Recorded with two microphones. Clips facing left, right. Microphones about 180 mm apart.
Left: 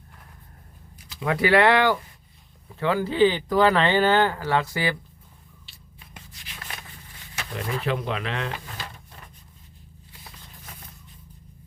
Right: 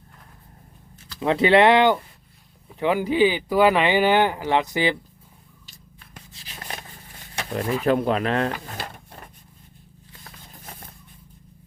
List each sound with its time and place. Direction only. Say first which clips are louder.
1.2 s speech: right 3 dB; 25° right (ahead or behind)
6.3 s a sound: right 5 dB; 35° right (ahead or behind)
7.9 s drawer open or close: right 9 dB; 45° right (ahead or behind)